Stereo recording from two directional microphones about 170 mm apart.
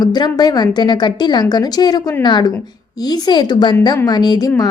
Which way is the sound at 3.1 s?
25° left (ahead or behind).